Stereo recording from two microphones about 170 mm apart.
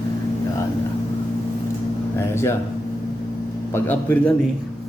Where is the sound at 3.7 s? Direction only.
10° left (ahead or behind).